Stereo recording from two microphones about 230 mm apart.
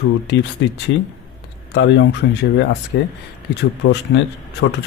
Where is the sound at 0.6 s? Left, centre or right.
Left.